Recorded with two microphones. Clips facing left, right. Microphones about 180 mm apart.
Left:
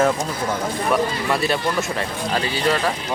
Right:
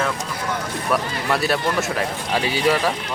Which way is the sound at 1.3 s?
Centre (ahead or behind).